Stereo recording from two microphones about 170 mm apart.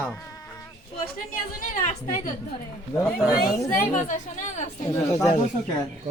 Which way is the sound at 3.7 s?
45° left (ahead or behind).